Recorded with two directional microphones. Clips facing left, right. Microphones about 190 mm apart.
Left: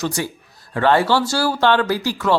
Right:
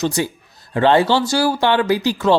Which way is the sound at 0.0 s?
20° right (ahead or behind).